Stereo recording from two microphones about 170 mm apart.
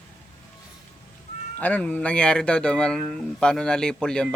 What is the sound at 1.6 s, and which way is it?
A man's voice, 10° left (ahead or behind).